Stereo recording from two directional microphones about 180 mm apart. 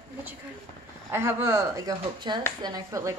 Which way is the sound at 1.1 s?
15° right (ahead or behind).